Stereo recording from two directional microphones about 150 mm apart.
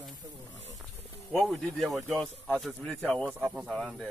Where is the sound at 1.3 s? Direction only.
Centre (ahead or behind).